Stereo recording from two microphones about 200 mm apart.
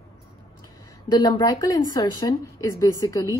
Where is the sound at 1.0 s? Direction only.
20° left (ahead or behind).